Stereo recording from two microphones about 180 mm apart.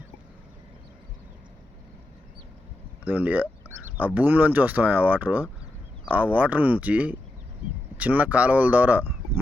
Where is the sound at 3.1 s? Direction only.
10° right (ahead or behind).